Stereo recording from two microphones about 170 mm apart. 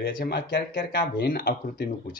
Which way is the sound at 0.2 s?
65° left (ahead or behind).